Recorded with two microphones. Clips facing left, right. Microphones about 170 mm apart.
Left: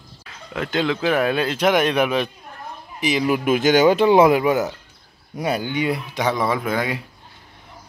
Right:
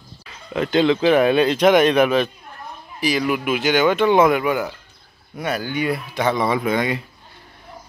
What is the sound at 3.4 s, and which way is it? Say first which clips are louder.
Speech: left 4 dB; 45° left (ahead or behind).